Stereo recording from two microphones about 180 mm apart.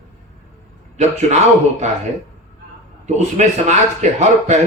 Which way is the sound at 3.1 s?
40° right (ahead or behind).